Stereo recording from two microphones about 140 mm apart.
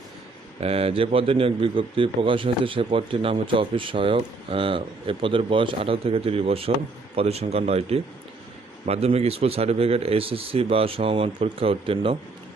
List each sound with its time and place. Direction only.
0.6 s a man's voice: 45° right (ahead or behind)